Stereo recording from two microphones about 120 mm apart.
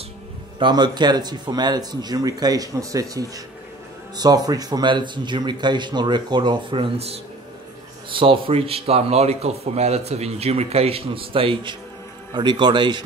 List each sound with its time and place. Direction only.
0.6 s a man's voice: 40° right (ahead or behind)